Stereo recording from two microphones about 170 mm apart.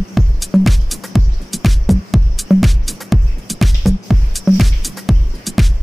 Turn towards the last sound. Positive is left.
turn(degrees=0)  # may be behind; listen again after turning